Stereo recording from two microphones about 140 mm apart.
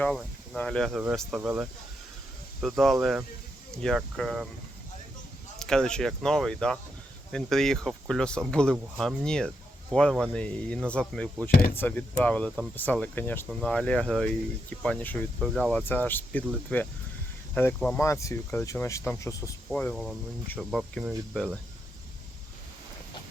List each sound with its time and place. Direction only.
0.0 s speech: 5° left (ahead or behind)
1.4 s speech: 10° right (ahead or behind)
2.6 s speech: centre (ahead or behind)
5.5 s speech: 5° left (ahead or behind)
15.4 s speech: centre (ahead or behind)
15.8 s speech: 15° left (ahead or behind)
19.7 s speech: 5° left (ahead or behind)